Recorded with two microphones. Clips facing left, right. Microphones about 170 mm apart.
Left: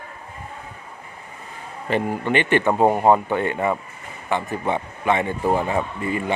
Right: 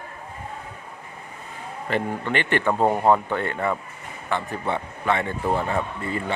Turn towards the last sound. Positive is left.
turn(degrees=15)  # may be behind; listen again after turning